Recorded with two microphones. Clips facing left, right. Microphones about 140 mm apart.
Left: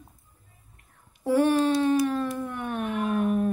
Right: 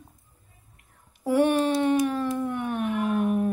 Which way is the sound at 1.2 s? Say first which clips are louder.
Even; 15° right (ahead or behind).